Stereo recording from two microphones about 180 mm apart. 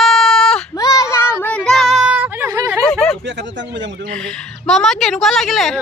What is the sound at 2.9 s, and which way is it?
Speech, 5° left (ahead or behind).